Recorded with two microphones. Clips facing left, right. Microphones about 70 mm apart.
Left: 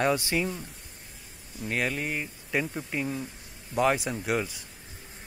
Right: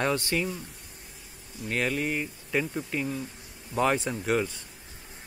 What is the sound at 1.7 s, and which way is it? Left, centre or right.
Speech, centre.